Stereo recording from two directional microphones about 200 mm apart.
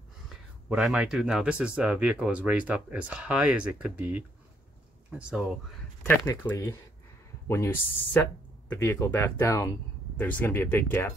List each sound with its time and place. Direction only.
0.7 s speech: centre (ahead or behind)
6.4 s speech: 15° left (ahead or behind)